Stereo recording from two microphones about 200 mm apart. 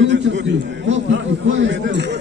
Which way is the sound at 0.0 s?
65° right (ahead or behind).